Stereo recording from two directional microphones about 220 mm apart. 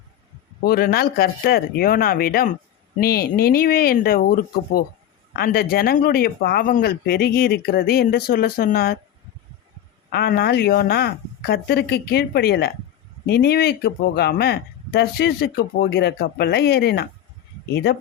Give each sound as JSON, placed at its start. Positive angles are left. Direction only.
{"t": 0.6, "sound": "speech", "side_deg": 45}
{"t": 10.1, "sound": "speech", "side_deg": 45}